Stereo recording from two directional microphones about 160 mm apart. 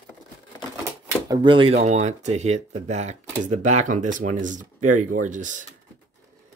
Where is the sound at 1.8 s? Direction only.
45° right (ahead or behind).